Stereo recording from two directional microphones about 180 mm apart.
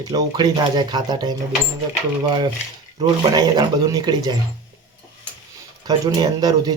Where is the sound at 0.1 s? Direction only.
25° right (ahead or behind).